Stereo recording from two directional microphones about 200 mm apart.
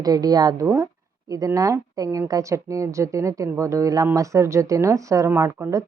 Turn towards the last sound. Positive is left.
turn(degrees=-15)  # may be behind; listen again after turning